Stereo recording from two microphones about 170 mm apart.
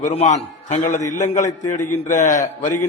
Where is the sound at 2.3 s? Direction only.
20° left (ahead or behind).